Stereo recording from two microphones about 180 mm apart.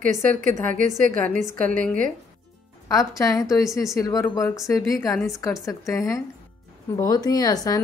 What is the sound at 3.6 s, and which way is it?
Speech, centre (ahead or behind).